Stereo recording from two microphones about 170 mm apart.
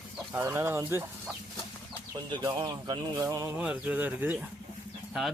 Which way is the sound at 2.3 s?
25° right (ahead or behind).